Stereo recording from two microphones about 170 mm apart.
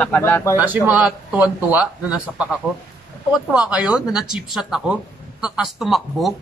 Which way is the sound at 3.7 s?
5° right (ahead or behind).